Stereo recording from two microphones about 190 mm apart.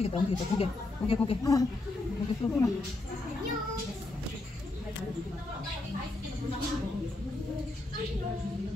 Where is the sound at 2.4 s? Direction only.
20° left (ahead or behind).